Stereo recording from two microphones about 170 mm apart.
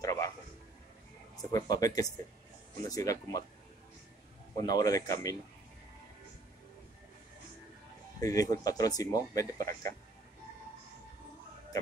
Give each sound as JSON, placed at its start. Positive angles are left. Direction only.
{"t": 0.0, "sound": "a sound", "side_deg": 20}
{"t": 1.3, "sound": "speech", "side_deg": 20}
{"t": 4.6, "sound": "speech", "side_deg": 20}
{"t": 8.2, "sound": "speech", "side_deg": 20}